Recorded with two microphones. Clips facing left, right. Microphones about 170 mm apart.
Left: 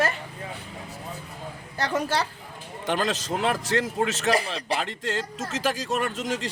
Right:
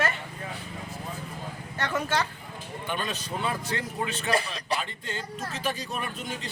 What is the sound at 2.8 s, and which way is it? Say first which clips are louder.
A man's voice: left 7 dB; 90° left.